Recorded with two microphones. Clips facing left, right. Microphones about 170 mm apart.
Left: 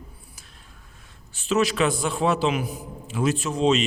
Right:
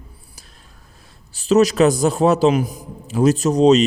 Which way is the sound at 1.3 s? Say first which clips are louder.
Right 8 dB; 40° right (ahead or behind).